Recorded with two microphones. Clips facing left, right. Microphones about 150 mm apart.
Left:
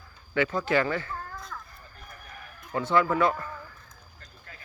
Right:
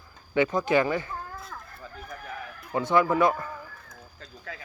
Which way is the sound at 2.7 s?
15° right (ahead or behind).